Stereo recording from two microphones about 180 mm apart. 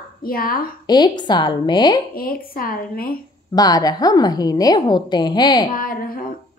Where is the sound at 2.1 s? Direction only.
55° left (ahead or behind).